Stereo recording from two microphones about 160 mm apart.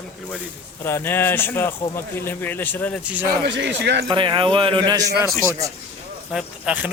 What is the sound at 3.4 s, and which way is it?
Speech, 90° right.